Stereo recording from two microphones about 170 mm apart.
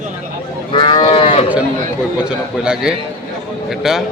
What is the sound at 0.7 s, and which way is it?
Cattle, 30° left (ahead or behind).